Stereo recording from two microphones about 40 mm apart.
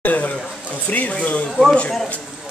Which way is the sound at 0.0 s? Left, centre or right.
Left.